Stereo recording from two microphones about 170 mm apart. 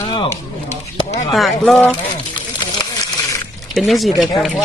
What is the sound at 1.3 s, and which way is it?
Speech, centre (ahead or behind).